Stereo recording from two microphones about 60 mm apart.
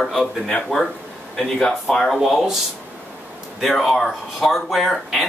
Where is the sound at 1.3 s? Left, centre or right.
Centre.